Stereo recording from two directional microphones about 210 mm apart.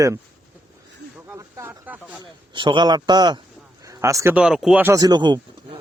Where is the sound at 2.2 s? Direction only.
20° right (ahead or behind).